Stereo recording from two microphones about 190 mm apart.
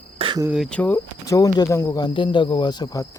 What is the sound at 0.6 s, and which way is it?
Speech, 10° left (ahead or behind).